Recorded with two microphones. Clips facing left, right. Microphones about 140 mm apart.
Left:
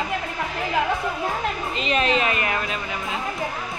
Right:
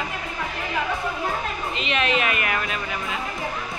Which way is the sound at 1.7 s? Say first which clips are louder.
Left 2 dB; 35° left (ahead or behind).